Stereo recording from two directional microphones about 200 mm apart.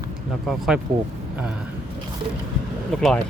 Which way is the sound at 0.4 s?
Centre (ahead or behind).